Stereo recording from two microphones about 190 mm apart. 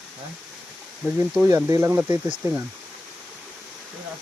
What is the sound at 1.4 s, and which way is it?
Speech, 15° right (ahead or behind).